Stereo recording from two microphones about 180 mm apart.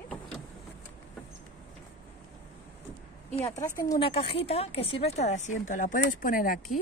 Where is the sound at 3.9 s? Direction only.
30° left (ahead or behind); by 6.6 s 50° left (ahead or behind).